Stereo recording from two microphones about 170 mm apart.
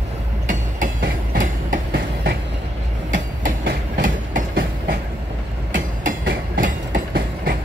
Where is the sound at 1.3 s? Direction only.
50° right (ahead or behind).